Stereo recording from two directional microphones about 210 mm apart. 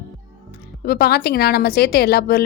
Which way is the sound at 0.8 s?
50° left (ahead or behind).